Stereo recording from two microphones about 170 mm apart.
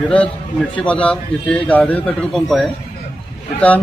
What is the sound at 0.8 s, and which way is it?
A man's voice, 5° left (ahead or behind).